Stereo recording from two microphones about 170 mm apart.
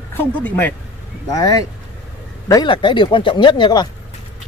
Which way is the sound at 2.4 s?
25° left (ahead or behind).